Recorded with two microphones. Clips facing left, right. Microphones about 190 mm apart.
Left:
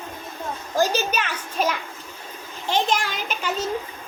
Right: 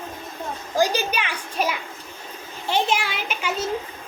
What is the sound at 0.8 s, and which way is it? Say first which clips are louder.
A woman's voice: even; 10° right (ahead or behind).